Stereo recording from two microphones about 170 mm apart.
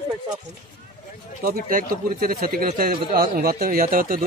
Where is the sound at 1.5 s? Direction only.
55° right (ahead or behind).